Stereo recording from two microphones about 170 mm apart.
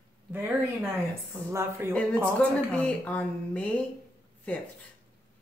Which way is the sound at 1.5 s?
15° right (ahead or behind).